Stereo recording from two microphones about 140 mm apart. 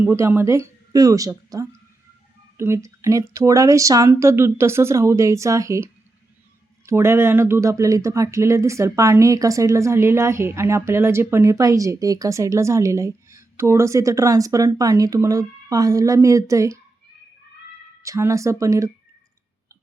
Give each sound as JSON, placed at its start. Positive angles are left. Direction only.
{"t": 0.0, "sound": "speech", "side_deg": -15}
{"t": 18.0, "sound": "speech", "side_deg": -20}